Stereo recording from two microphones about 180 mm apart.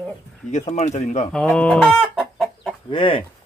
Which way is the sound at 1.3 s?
5° left (ahead or behind).